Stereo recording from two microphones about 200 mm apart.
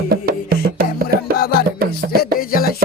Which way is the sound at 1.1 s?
50° right (ahead or behind).